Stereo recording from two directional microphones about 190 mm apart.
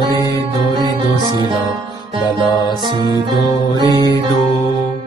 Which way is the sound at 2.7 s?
25° right (ahead or behind).